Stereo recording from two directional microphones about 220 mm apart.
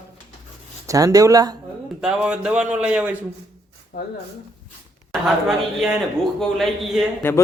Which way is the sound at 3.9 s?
45° left (ahead or behind).